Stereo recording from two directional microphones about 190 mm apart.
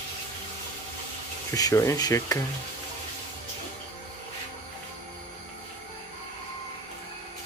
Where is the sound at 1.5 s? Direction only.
20° left (ahead or behind).